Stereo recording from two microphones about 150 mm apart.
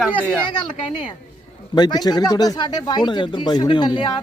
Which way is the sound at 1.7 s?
30° left (ahead or behind).